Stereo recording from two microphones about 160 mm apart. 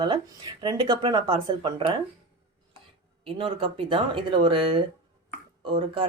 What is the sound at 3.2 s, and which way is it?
Speech, 35° right (ahead or behind).